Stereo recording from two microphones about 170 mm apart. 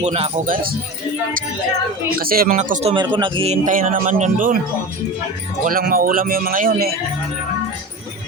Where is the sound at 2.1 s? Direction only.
60° right (ahead or behind).